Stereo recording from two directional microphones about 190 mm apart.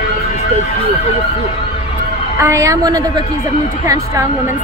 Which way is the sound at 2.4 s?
15° right (ahead or behind).